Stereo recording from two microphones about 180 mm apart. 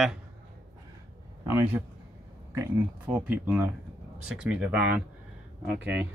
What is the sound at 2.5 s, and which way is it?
Speech, 10° right (ahead or behind).